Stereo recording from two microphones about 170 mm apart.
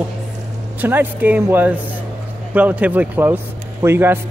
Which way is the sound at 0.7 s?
10° right (ahead or behind).